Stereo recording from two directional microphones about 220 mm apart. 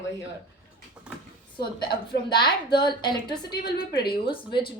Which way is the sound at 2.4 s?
20° left (ahead or behind).